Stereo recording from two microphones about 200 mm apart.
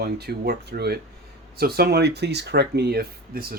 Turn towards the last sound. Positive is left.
turn(degrees=-50)  # may be behind; listen again after turning